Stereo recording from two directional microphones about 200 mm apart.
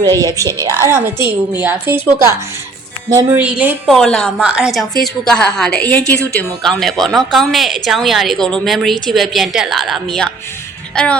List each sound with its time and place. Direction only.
0.0 s a woman's voice: 20° right (ahead or behind)
0.3 s a woman's voice: 15° left (ahead or behind)
0.8 s a woman's voice: 15° right (ahead or behind); by 11.2 s 5° left (ahead or behind)